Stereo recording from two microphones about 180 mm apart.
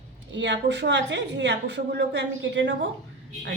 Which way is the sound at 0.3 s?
80° right.